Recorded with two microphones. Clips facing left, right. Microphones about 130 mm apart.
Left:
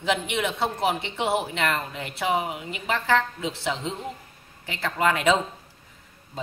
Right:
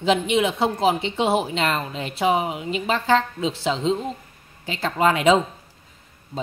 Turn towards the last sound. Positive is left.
turn(degrees=-20)  # may be behind; listen again after turning